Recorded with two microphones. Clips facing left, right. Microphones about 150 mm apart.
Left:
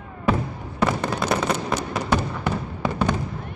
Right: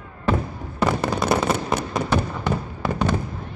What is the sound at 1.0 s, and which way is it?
Fireworks, 5° right (ahead or behind).